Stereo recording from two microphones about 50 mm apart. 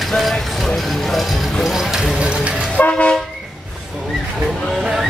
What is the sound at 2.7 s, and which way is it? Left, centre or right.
Vehicle, left.